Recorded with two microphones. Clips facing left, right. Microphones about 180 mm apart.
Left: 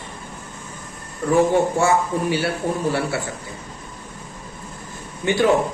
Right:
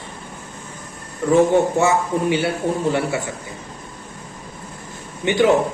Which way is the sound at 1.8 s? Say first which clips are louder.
Right 1 dB; 20° right (ahead or behind).